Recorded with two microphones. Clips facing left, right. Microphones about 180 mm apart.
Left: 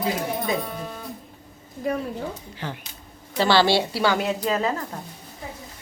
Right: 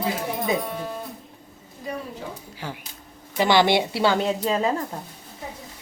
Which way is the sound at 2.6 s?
10° right (ahead or behind).